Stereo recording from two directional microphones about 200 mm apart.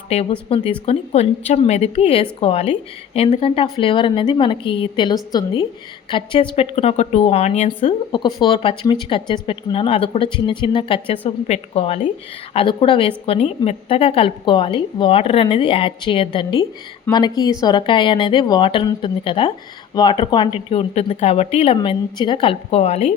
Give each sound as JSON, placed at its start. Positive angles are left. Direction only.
{"t": 0.1, "sound": "a woman's voice", "side_deg": 30}